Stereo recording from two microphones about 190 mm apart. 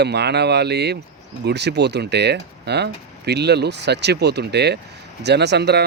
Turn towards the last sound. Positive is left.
turn(degrees=-60)  # may be behind; listen again after turning